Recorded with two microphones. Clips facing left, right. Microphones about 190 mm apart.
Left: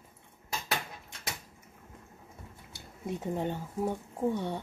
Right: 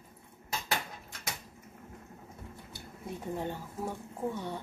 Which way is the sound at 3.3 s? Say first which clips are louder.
Left 4 dB; 20° left (ahead or behind).